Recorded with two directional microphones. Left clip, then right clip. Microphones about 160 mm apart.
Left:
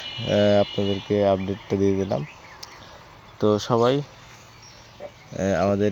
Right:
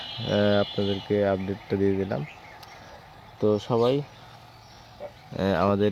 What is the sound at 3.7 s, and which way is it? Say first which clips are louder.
Speech: left 3 dB; 20° left (ahead or behind).